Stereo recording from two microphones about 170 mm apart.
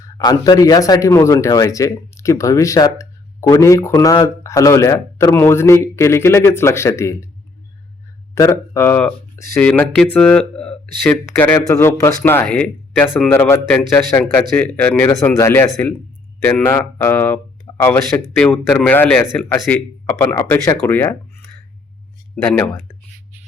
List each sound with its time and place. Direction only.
0.0 s speech: 20° left (ahead or behind)
8.4 s speech: 15° left (ahead or behind); by 13.3 s centre (ahead or behind)
13.3 s speech: 15° left (ahead or behind)
22.4 s speech: 10° left (ahead or behind)